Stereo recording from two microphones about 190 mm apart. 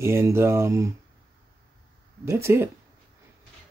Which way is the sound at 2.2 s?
15° right (ahead or behind).